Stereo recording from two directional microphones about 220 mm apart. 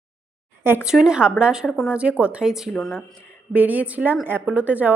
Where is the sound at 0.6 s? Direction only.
5° right (ahead or behind).